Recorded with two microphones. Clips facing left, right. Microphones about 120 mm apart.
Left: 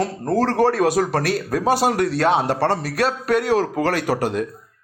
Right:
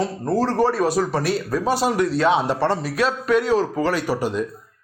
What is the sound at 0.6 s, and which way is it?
A man's voice, 85° left.